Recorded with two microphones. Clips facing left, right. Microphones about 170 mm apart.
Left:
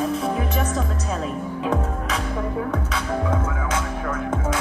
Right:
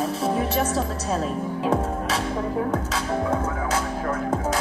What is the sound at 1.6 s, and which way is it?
Music, 30° right (ahead or behind).